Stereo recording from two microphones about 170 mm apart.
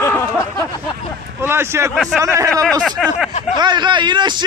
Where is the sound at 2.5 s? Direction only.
5° left (ahead or behind).